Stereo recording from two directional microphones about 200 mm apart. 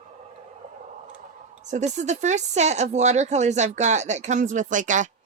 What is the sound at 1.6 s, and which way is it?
Speech, 35° right (ahead or behind).